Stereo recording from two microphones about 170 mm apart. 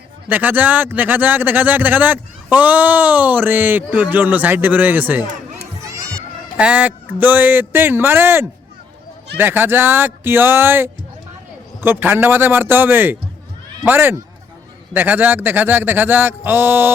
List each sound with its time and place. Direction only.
0.3 s a man's voice: 10° right (ahead or behind)
6.6 s a man's voice: 10° right (ahead or behind)